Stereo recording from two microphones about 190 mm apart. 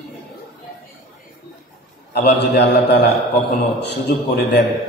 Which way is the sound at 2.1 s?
60° left (ahead or behind).